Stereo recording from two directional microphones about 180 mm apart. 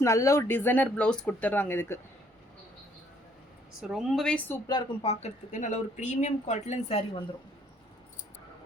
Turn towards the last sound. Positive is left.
turn(degrees=35)  # may be behind; listen again after turning